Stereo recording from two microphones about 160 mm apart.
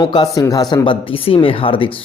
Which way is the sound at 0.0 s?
25° left (ahead or behind).